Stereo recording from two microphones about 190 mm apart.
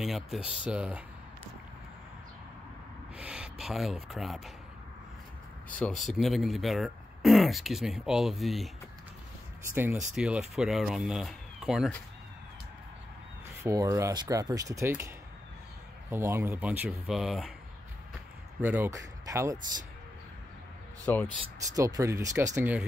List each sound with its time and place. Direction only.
0.0 s speech: centre (ahead or behind)
3.2 s speech: 5° right (ahead or behind)
5.7 s speech: 5° left (ahead or behind)
9.8 s speech: 10° right (ahead or behind)
13.6 s speech: 15° right (ahead or behind)
18.6 s speech: 10° right (ahead or behind)
21.1 s speech: 10° left (ahead or behind)
21.7 s speech: 15° right (ahead or behind)